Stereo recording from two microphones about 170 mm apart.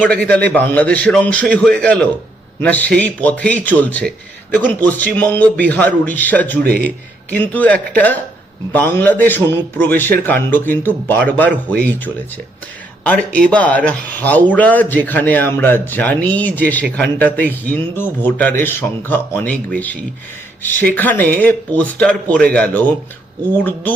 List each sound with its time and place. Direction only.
0.0 s speech: 5° left (ahead or behind)
6.6 s a man's voice: 65° right (ahead or behind)
6.8 s speech: 10° left (ahead or behind)